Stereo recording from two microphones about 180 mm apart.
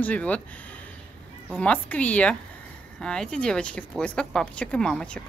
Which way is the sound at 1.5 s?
5° left (ahead or behind).